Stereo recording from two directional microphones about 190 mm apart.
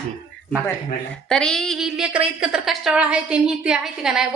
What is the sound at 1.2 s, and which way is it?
A woman's voice, 5° left (ahead or behind).